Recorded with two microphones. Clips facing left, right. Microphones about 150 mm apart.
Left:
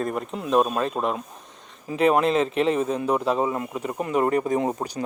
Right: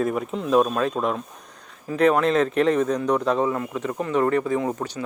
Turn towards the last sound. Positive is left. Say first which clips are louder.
# even
turn(degrees=20)  # may be behind; listen again after turning